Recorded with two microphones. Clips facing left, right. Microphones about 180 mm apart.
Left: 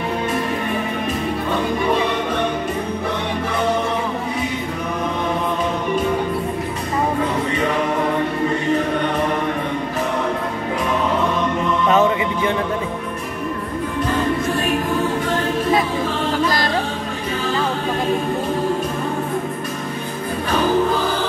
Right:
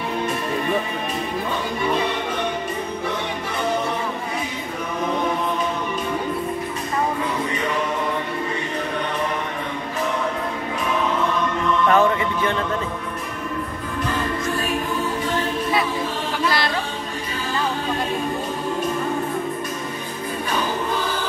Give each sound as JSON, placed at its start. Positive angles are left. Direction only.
{"t": 11.9, "sound": "mantra", "side_deg": 15}
{"t": 16.4, "sound": "music", "side_deg": 45}